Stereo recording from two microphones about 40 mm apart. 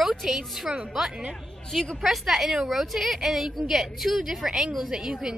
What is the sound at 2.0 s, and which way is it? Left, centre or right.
A woman's voice, centre.